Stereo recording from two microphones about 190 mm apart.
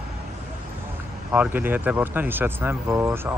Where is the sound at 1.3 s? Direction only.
10° right (ahead or behind).